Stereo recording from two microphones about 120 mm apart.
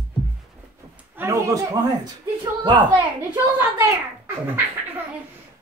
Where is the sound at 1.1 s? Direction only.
25° right (ahead or behind).